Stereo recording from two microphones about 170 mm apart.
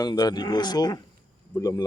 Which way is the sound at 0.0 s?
25° left (ahead or behind).